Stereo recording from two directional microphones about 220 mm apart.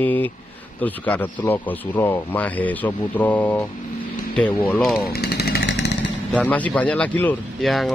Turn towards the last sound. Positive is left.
turn(degrees=0)  # may be behind; listen again after turning